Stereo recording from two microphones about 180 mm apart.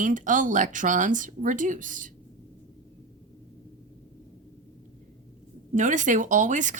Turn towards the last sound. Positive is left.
turn(degrees=-45)  # may be behind; listen again after turning